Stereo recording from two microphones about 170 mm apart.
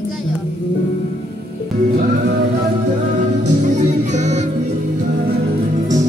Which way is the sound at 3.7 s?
45° right (ahead or behind).